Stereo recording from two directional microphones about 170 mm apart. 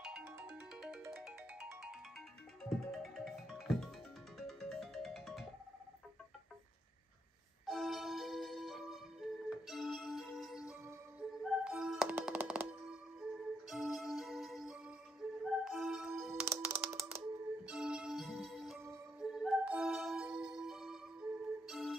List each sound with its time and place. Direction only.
0.0 s ringtone: 5° right (ahead or behind)
2.9 s music: centre (ahead or behind)
7.6 s music: centre (ahead or behind)
16.4 s music: 15° right (ahead or behind)
17.6 s music: 5° right (ahead or behind)